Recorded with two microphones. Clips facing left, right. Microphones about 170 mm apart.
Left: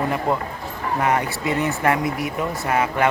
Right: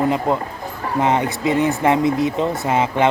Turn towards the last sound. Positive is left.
turn(degrees=-20)  # may be behind; listen again after turning